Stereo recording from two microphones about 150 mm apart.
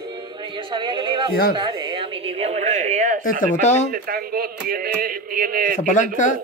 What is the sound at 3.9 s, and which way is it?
Speech, 80° right.